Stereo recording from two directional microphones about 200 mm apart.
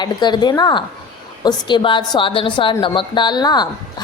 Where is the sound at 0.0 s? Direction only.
20° left (ahead or behind).